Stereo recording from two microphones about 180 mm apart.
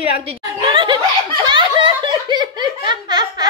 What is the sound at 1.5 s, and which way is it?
Laughter, 25° right (ahead or behind).